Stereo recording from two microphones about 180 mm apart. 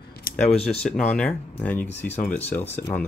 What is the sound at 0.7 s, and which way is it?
Speech, 5° left (ahead or behind).